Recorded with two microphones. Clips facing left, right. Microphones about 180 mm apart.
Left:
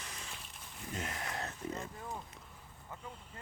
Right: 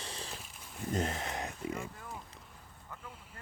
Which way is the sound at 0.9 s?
40° right (ahead or behind).